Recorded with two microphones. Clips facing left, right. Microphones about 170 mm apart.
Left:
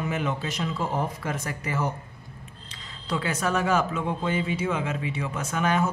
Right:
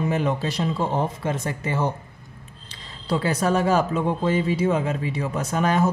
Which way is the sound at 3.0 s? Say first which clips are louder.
Right 5 dB; 35° right (ahead or behind).